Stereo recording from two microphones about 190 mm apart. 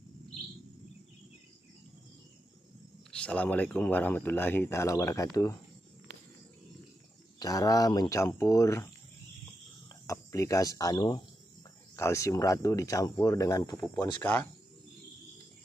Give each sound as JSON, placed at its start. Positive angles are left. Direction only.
{"t": 3.1, "sound": "speech", "side_deg": 5}
{"t": 7.3, "sound": "speech", "side_deg": 20}
{"t": 9.8, "sound": "speech", "side_deg": 15}